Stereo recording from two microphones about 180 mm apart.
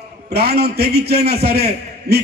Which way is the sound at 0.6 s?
65° right (ahead or behind).